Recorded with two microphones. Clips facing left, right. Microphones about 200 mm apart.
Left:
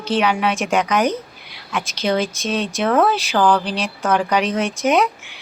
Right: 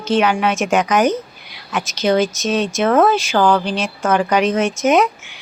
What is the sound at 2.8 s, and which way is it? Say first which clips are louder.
Speech: right 3 dB; 5° right (ahead or behind).